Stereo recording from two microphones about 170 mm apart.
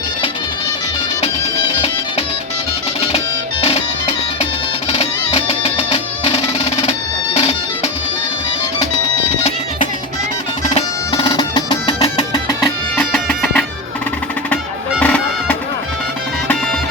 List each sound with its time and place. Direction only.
3.6 s music: 35° left (ahead or behind)
11.1 s music: 25° left (ahead or behind)
12.6 s music: 5° left (ahead or behind)